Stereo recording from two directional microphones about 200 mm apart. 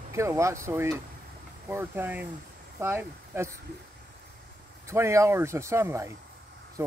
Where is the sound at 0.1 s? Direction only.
15° right (ahead or behind).